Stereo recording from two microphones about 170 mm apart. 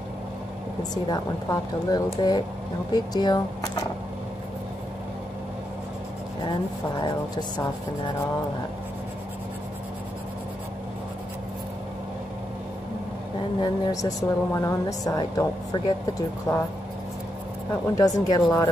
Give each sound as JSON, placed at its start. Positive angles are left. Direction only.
{"t": 1.0, "sound": "speech", "side_deg": 25}
{"t": 7.0, "sound": "speech", "side_deg": 25}
{"t": 13.6, "sound": "speech", "side_deg": 20}
{"t": 17.9, "sound": "speech", "side_deg": 20}